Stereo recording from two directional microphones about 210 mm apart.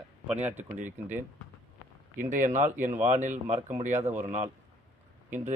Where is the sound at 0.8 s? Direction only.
10° right (ahead or behind).